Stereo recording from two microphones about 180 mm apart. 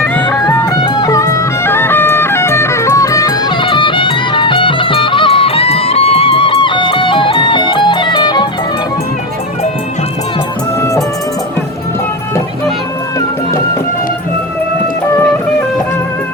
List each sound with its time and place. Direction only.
0.0 s music: 10° left (ahead or behind)
0.4 s music: 20° left (ahead or behind)
10.8 s music: 20° left (ahead or behind)